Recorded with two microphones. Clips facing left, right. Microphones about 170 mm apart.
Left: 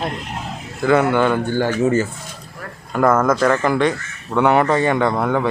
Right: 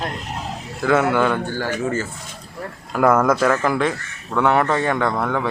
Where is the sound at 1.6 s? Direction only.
20° left (ahead or behind).